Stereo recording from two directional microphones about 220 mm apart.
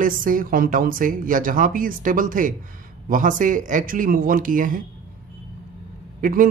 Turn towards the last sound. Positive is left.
turn(degrees=-40)  # may be behind; listen again after turning